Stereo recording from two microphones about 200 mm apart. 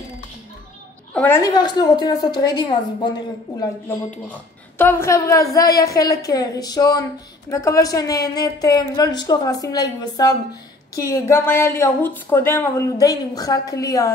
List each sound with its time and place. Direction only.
1.1 s speech: 10° left (ahead or behind)
4.3 s a woman's voice: 10° left (ahead or behind)